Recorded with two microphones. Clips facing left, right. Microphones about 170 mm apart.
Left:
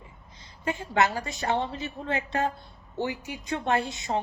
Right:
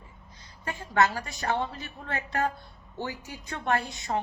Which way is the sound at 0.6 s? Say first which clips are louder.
Left 1 dB; 20° left (ahead or behind).